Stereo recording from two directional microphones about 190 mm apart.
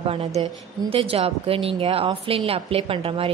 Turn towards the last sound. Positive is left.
turn(degrees=-30)  # may be behind; listen again after turning